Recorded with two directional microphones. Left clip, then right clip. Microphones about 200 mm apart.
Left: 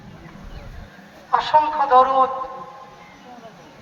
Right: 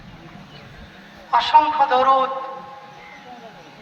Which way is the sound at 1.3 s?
35° left (ahead or behind).